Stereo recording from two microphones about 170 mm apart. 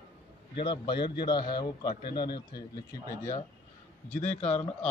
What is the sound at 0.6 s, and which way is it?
A man's voice, 30° left (ahead or behind).